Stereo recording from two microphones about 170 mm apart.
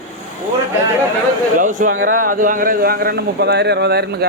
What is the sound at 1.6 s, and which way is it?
Speech, 50° right (ahead or behind).